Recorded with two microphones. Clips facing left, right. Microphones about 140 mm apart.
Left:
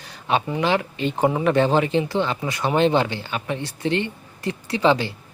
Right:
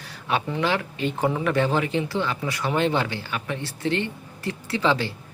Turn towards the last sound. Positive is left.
turn(degrees=20)  # may be behind; listen again after turning